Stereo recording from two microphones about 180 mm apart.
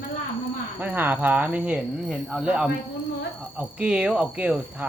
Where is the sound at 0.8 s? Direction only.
10° right (ahead or behind).